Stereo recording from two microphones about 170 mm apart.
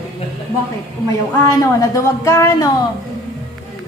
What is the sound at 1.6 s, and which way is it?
Speech, 20° left (ahead or behind).